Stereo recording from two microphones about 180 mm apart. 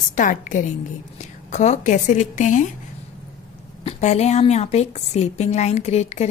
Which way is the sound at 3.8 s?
40° left (ahead or behind).